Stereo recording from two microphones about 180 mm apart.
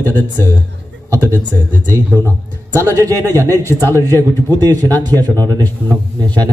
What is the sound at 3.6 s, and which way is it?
Speech, 15° left (ahead or behind).